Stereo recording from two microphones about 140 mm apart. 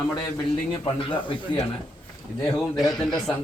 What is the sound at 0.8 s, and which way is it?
Speech, 40° left (ahead or behind).